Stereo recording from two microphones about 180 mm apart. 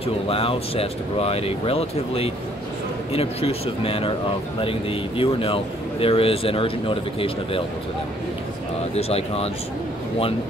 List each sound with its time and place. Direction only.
0.0 s speech: 30° left (ahead or behind)
8.9 s speech: 35° left (ahead or behind)